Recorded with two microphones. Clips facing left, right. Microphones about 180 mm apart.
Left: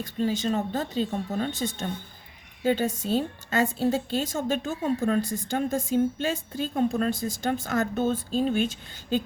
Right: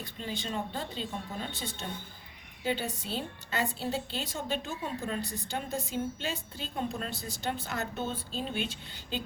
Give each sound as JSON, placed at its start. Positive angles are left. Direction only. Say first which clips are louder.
{"t": 0.0, "sound": "a woman's voice", "louder": "left 11 dB", "side_deg": 45}